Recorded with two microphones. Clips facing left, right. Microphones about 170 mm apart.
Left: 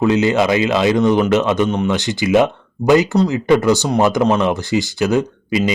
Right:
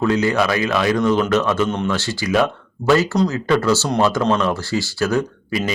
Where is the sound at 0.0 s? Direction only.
20° left (ahead or behind).